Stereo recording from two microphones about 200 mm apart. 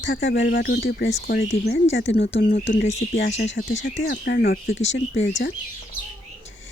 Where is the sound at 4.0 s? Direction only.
55° left (ahead or behind).